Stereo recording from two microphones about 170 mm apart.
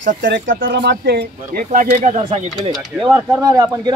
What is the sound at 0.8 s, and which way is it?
Speech, 80° right.